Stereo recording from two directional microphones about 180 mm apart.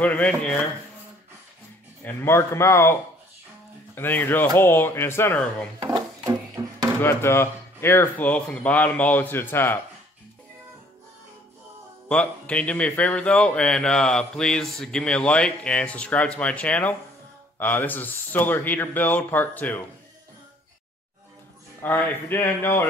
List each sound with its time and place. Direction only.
0.0 s speech: 10° left (ahead or behind)
2.0 s speech: 15° left (ahead or behind)
5.9 s a sound: 20° right (ahead or behind)
7.0 s speech: 15° left (ahead or behind)
12.1 s speech: 5° left (ahead or behind)
21.8 s speech: 10° left (ahead or behind)